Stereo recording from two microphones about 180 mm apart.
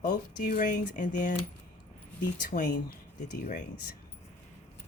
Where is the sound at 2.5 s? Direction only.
60° left (ahead or behind).